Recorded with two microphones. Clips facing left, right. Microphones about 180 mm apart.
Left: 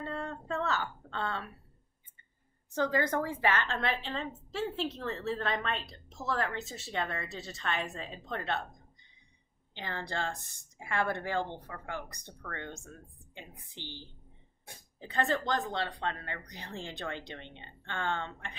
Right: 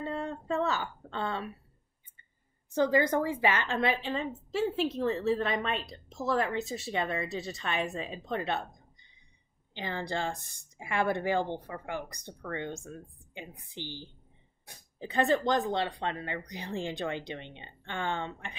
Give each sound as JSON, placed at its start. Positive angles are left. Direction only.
{"t": 0.0, "sound": "a woman's voice", "side_deg": -15}
{"t": 2.7, "sound": "a woman's voice", "side_deg": -15}
{"t": 9.8, "sound": "a woman's voice", "side_deg": -10}